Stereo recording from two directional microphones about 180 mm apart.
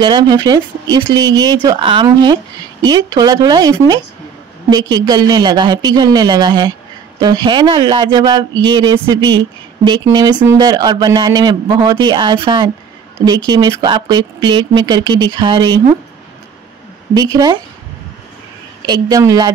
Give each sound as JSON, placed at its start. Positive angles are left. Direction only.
{"t": 0.0, "sound": "speech", "side_deg": -25}
{"t": 17.1, "sound": "speech", "side_deg": -20}
{"t": 18.9, "sound": "speech", "side_deg": -20}